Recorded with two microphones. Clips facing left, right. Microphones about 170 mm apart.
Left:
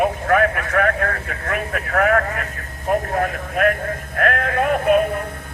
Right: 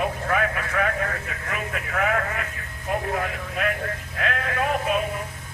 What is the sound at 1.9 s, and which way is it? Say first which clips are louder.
Speech: left 7 dB; 55° left (ahead or behind).